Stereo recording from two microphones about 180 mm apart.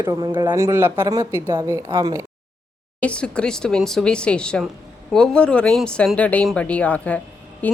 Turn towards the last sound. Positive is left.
turn(degrees=10)  # may be behind; listen again after turning